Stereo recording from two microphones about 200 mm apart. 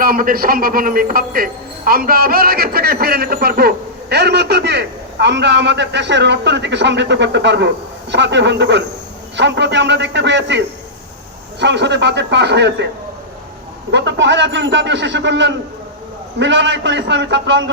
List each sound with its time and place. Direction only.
0.0 s a man's voice: 45° right (ahead or behind); by 10.6 s 60° right (ahead or behind)
11.6 s speech: 60° right (ahead or behind)
13.9 s speech: 65° right (ahead or behind)